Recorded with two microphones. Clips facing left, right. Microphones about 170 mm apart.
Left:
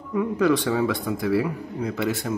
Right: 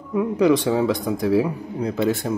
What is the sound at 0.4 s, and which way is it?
Speech, 15° right (ahead or behind).